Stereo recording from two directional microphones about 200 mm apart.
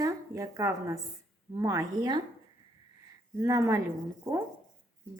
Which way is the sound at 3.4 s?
15° right (ahead or behind).